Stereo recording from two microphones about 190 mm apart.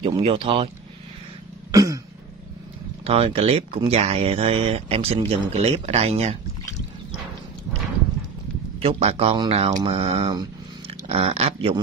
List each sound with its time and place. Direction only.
0.0 s speech: 30° right (ahead or behind)
1.7 s cough: 15° right (ahead or behind)
3.0 s speech: 30° right (ahead or behind)
8.7 s speech: 30° right (ahead or behind)